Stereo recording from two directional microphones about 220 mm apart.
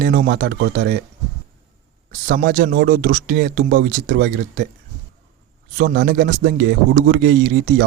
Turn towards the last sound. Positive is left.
turn(degrees=-50)  # may be behind; listen again after turning